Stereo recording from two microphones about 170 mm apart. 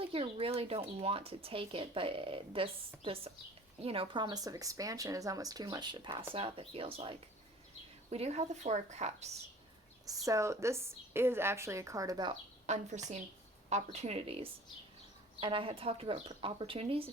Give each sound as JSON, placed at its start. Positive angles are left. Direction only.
{"t": 0.0, "sound": "speech", "side_deg": -35}
{"t": 10.1, "sound": "a woman's voice", "side_deg": -20}
{"t": 12.6, "sound": "a woman's voice", "side_deg": -40}